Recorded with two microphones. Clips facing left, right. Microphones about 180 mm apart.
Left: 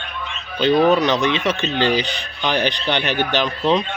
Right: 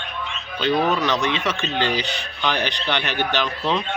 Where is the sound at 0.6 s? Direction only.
15° left (ahead or behind).